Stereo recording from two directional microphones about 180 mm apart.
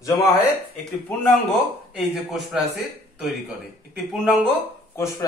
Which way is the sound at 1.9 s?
5° right (ahead or behind).